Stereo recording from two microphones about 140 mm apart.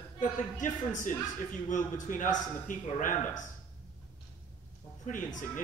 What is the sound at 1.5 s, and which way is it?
Speech, 65° left (ahead or behind).